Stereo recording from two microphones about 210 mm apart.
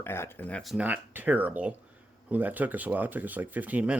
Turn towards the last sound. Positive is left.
turn(degrees=-5)  # may be behind; listen again after turning